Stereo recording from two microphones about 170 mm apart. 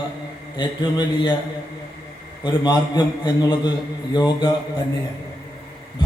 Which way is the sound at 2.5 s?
25° left (ahead or behind).